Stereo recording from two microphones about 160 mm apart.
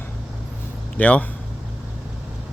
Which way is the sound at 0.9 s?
10° left (ahead or behind).